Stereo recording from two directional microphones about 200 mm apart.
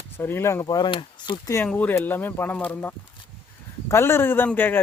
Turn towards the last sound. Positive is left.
turn(degrees=10)  # may be behind; listen again after turning